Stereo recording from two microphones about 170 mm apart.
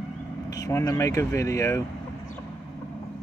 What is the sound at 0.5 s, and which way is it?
Speech, 20° left (ahead or behind).